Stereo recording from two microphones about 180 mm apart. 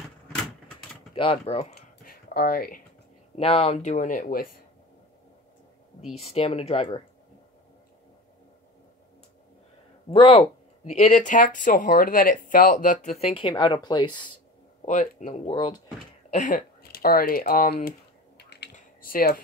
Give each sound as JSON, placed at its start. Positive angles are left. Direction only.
{"t": 1.1, "sound": "speech", "side_deg": 30}
{"t": 1.8, "sound": "a sound", "side_deg": 60}
{"t": 3.3, "sound": "speech", "side_deg": 35}
{"t": 6.3, "sound": "speech", "side_deg": 35}
{"t": 10.1, "sound": "speech", "side_deg": 30}
{"t": 14.9, "sound": "speech", "side_deg": 45}
{"t": 15.5, "sound": "speech", "side_deg": 25}
{"t": 16.3, "sound": "speech", "side_deg": 45}
{"t": 18.4, "sound": "typing", "side_deg": 65}